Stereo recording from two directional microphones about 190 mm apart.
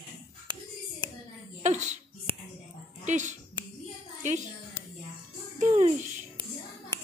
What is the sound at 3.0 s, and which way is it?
Speech, 40° right (ahead or behind).